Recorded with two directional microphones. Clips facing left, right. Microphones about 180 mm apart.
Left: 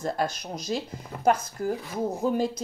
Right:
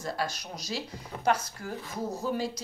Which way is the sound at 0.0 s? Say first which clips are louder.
Left 5 dB; 50° left (ahead or behind).